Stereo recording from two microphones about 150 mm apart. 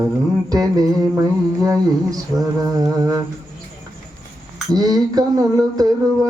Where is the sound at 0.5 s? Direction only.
25° right (ahead or behind).